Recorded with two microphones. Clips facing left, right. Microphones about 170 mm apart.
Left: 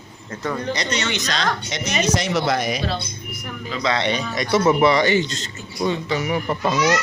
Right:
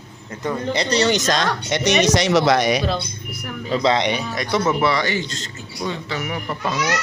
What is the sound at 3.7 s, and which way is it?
Speech, 30° right (ahead or behind).